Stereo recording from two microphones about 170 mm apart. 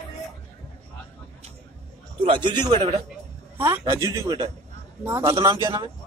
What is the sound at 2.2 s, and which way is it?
Speech, 30° right (ahead or behind).